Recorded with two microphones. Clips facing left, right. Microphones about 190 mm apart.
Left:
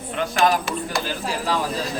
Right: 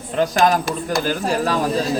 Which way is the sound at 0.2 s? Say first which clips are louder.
Right 4 dB; 40° right (ahead or behind).